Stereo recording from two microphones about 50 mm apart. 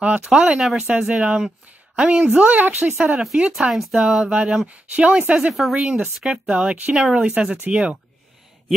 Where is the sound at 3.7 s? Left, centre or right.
Centre.